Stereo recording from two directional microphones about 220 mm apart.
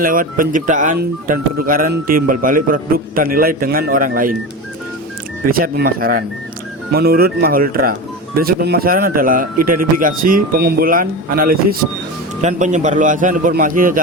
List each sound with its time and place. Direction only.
0.0 s speech: 40° right (ahead or behind)
5.5 s speech: 40° right (ahead or behind)